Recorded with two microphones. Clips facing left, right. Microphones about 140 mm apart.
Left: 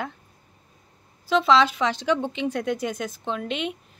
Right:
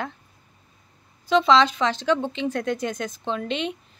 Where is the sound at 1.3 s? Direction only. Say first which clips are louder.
Right 1 dB; 5° left (ahead or behind).